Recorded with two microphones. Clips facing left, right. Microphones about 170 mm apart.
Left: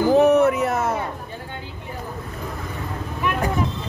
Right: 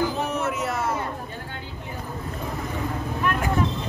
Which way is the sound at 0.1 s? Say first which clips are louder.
Left 12 dB; 65° left (ahead or behind).